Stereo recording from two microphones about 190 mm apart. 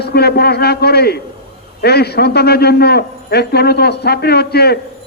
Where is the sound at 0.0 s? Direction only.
60° left (ahead or behind).